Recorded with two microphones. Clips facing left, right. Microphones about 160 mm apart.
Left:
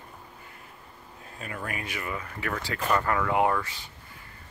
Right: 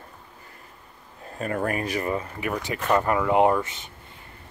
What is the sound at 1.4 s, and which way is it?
Speech, 45° right (ahead or behind).